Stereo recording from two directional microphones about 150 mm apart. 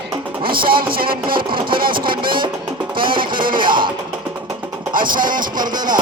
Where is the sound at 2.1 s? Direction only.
35° right (ahead or behind).